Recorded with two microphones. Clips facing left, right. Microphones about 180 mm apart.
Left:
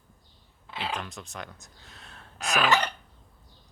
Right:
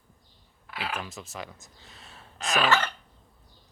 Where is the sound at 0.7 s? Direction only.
25° left (ahead or behind).